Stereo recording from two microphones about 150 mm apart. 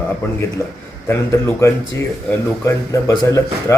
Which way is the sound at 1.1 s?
15° left (ahead or behind).